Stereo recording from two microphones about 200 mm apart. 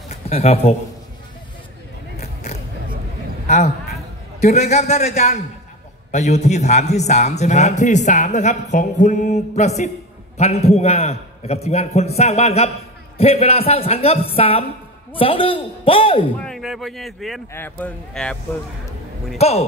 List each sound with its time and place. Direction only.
0.1 s a man's voice: 30° left (ahead or behind)
3.4 s a man's voice: 35° left (ahead or behind)
16.3 s speech: centre (ahead or behind)
17.5 s speech: 10° left (ahead or behind)
19.3 s speech: 30° left (ahead or behind)